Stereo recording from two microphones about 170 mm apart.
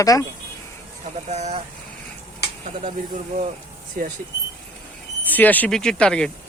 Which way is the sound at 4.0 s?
60° right (ahead or behind).